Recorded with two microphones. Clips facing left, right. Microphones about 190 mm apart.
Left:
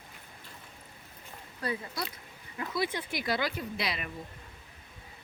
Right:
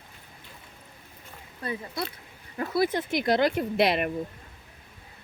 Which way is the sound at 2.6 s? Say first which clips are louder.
Right 7 dB; 40° right (ahead or behind).